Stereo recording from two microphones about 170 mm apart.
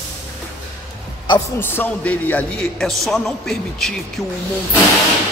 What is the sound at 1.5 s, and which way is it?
A man's voice, 10° left (ahead or behind).